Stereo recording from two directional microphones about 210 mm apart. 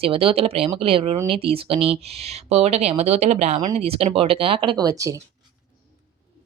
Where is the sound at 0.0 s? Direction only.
25° right (ahead or behind).